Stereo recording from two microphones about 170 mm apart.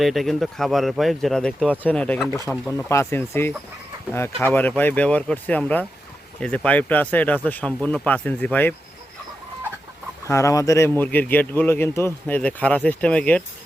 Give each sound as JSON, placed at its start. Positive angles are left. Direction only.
{"t": 0.0, "sound": "a man's voice", "side_deg": 0}
{"t": 4.5, "sound": "a man's voice", "side_deg": 10}
{"t": 10.2, "sound": "a man's voice", "side_deg": 15}